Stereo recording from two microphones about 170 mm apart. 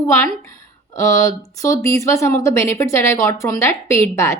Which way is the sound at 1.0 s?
20° left (ahead or behind).